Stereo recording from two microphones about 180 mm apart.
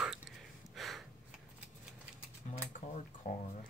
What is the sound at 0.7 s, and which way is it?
Gasp, centre (ahead or behind).